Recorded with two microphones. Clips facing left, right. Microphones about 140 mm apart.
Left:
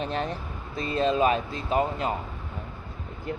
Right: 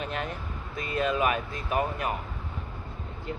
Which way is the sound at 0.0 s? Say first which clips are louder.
Left 4 dB; 35° left (ahead or behind).